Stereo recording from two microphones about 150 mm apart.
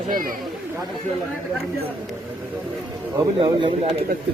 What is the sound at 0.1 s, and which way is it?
Speech, 70° right (ahead or behind).